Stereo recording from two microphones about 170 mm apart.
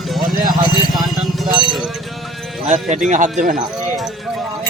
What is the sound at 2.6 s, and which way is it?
Speech, 45° right (ahead or behind).